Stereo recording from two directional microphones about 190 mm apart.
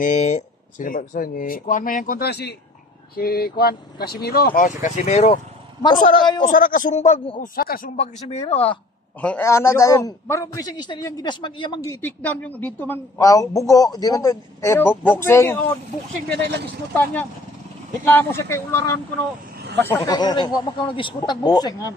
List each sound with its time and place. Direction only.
0.0 s speech: 40° left (ahead or behind)
6.1 s speech: 25° left (ahead or behind)
6.4 s speech: 45° left (ahead or behind)
7.5 s speech: 50° left (ahead or behind); by 8.6 s 30° left (ahead or behind)
9.2 s a man's voice: 10° left (ahead or behind)
16.3 s speech: 60° right (ahead or behind)
16.9 s a man's voice: 10° left (ahead or behind)